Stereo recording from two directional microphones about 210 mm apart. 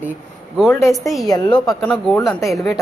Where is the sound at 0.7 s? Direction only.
15° left (ahead or behind).